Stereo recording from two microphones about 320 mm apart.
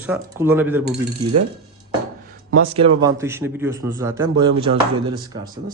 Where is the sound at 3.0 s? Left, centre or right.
Centre.